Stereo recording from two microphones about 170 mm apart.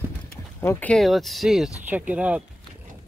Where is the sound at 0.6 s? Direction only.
10° left (ahead or behind); by 2.4 s 10° right (ahead or behind).